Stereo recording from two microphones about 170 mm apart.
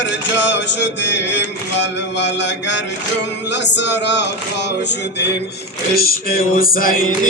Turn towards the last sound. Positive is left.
turn(degrees=55)  # may be behind; listen again after turning